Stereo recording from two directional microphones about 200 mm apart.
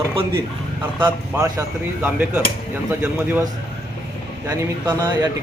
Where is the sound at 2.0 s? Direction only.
5° right (ahead or behind).